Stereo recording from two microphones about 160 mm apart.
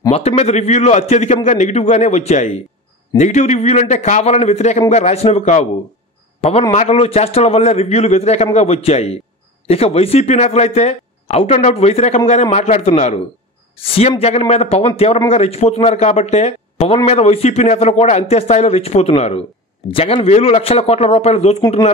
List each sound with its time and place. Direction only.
0.1 s a man's voice: 40° left (ahead or behind)
6.7 s a man's voice: 40° left (ahead or behind)